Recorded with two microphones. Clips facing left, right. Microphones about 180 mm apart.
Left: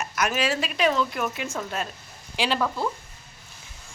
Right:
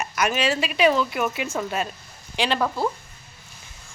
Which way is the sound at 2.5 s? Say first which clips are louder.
Right 3 dB; 25° right (ahead or behind).